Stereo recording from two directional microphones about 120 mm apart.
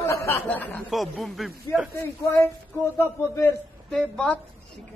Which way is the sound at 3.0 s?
20° left (ahead or behind).